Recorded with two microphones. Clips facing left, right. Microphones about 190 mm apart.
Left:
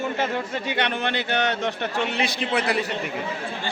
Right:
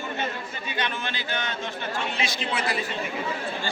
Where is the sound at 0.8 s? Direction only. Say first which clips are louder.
Left 4 dB; 65° left (ahead or behind).